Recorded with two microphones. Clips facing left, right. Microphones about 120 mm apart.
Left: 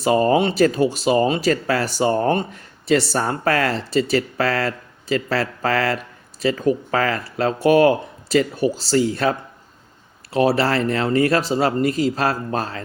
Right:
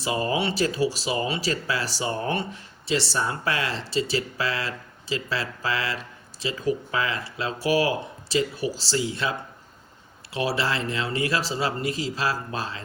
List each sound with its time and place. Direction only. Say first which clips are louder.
0.0 s speech: left 9 dB; 45° left (ahead or behind)
10.4 s speech: left 8 dB; 50° left (ahead or behind)